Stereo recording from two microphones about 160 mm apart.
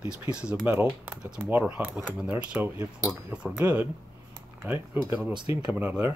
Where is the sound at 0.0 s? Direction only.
5° right (ahead or behind).